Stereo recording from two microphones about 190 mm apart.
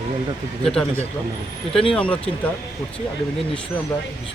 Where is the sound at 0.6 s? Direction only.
5° left (ahead or behind).